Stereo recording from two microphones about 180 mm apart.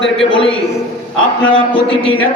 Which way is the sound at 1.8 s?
30° left (ahead or behind).